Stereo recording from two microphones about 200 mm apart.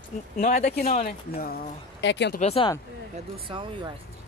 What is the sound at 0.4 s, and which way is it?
Speech, 50° left (ahead or behind).